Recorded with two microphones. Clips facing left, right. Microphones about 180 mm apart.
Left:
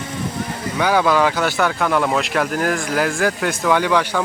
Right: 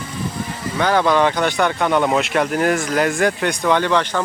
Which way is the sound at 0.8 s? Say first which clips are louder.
Even; 10° left (ahead or behind).